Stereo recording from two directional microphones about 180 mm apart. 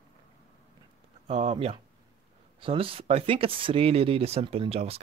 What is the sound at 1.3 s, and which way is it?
Speech, 35° right (ahead or behind).